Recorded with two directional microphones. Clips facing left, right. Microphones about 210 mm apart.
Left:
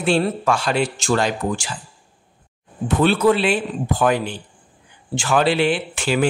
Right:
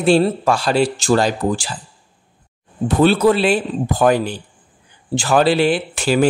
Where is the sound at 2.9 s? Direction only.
35° right (ahead or behind).